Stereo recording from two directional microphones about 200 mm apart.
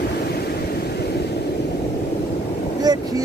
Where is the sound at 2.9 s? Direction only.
20° right (ahead or behind).